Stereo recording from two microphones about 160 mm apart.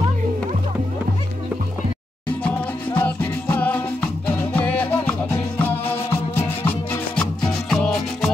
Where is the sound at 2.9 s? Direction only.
10° left (ahead or behind).